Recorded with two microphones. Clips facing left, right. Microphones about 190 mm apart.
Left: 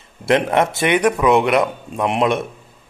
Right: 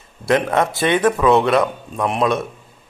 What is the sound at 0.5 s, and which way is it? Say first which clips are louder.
Speech: left 1 dB; 20° left (ahead or behind).